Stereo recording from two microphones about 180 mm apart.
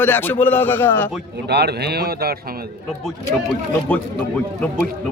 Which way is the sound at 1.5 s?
65° right (ahead or behind).